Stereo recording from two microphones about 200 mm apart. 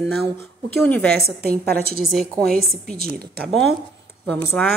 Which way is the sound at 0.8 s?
5° left (ahead or behind).